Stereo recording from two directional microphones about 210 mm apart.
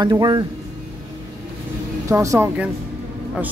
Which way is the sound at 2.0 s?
15° right (ahead or behind).